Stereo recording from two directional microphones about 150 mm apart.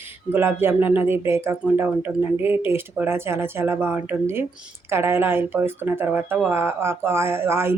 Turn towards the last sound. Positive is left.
turn(degrees=-15)  # may be behind; listen again after turning